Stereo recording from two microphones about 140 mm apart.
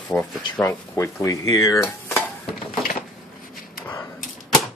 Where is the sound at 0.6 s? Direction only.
20° left (ahead or behind).